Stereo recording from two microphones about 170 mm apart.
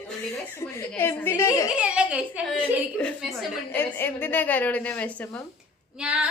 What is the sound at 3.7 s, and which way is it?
A woman's voice, 10° left (ahead or behind).